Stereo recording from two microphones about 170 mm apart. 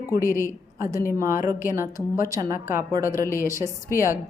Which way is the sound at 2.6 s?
50° left (ahead or behind).